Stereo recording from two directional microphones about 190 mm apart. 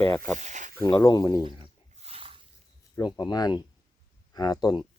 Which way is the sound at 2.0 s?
30° right (ahead or behind).